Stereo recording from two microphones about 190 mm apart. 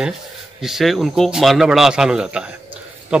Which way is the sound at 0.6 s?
Centre (ahead or behind).